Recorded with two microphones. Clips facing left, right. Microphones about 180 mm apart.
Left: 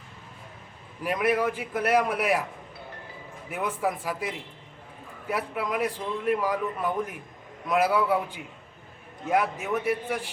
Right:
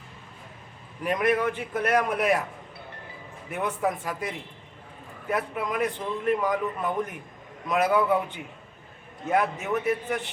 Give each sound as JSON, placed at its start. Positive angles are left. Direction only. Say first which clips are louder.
{"t": 1.0, "sound": "a man's voice", "louder": "right 1 dB", "side_deg": 5}
{"t": 3.5, "sound": "a man's voice", "louder": "right 1 dB", "side_deg": 0}
{"t": 9.2, "sound": "a man's voice", "louder": "even", "side_deg": 0}